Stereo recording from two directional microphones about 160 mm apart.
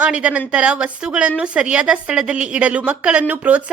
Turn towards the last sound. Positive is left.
turn(degrees=-10)  # may be behind; listen again after turning